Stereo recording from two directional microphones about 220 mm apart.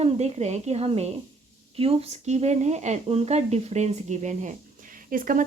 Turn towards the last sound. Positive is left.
turn(degrees=-40)  # may be behind; listen again after turning